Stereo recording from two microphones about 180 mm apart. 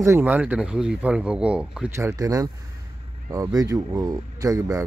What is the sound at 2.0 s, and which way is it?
Speech, 15° right (ahead or behind).